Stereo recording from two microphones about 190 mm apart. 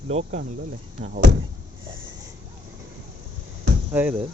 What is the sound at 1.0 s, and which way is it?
Speech, 45° right (ahead or behind).